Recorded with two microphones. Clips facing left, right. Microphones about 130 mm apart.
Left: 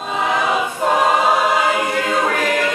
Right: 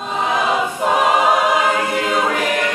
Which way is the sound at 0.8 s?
15° right (ahead or behind).